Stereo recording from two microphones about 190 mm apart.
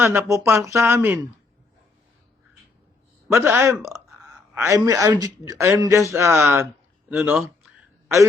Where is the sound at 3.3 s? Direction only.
10° right (ahead or behind).